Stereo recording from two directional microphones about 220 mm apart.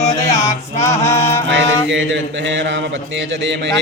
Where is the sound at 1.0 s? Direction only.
10° left (ahead or behind).